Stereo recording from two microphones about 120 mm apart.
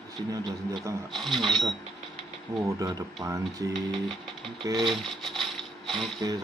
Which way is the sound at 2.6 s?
30° right (ahead or behind).